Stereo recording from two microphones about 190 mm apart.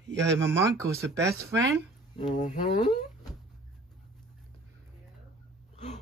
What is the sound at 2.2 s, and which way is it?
Speech, 35° left (ahead or behind).